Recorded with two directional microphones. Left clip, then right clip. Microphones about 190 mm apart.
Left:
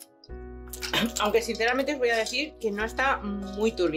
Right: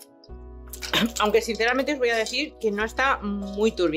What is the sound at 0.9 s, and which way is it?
Speech, 20° right (ahead or behind).